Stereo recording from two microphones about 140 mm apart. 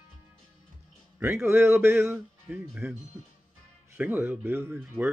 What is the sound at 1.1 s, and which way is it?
Speech, 15° right (ahead or behind).